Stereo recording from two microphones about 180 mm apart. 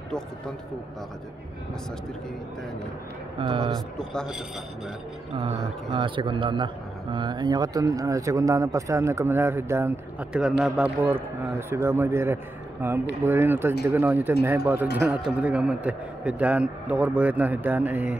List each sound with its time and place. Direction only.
3.3 s a man's voice: 30° right (ahead or behind)
4.1 s speech: 5° left (ahead or behind)
5.3 s a man's voice: 25° right (ahead or behind); by 18.1 s 10° right (ahead or behind)